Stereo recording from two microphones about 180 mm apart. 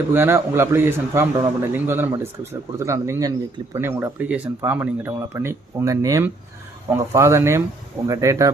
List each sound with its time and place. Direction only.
0.1 s a man's voice: 15° right (ahead or behind)